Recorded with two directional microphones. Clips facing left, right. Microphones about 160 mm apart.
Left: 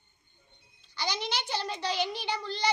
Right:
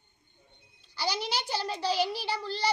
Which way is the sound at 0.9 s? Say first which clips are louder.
Right 2 dB; 10° right (ahead or behind).